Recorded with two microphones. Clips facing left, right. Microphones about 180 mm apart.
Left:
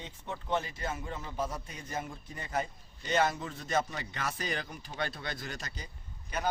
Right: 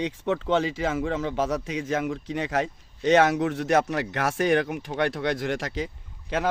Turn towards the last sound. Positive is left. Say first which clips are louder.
# right 8 dB
turn(degrees=-90)